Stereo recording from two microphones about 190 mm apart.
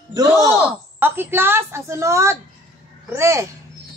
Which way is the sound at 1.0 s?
10° right (ahead or behind).